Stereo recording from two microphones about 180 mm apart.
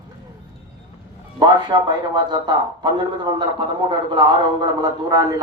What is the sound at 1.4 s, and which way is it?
A man's voice, 25° right (ahead or behind).